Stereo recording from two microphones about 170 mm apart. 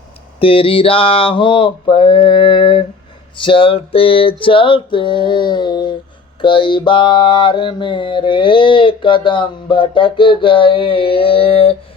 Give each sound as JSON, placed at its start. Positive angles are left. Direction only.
{"t": 0.3, "sound": "mantra", "side_deg": 35}